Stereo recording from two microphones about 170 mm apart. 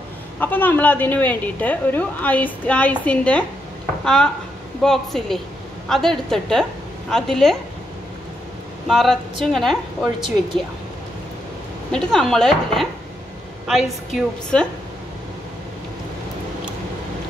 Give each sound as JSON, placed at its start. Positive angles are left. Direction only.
{"t": 0.4, "sound": "a woman's voice", "side_deg": 10}
{"t": 8.8, "sound": "a woman's voice", "side_deg": 0}
{"t": 11.9, "sound": "a woman's voice", "side_deg": 5}